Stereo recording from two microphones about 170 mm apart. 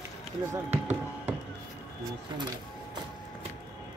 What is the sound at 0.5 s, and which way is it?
Basketball bounce, 10° right (ahead or behind).